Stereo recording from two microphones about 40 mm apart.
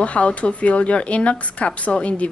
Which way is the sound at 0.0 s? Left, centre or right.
Left.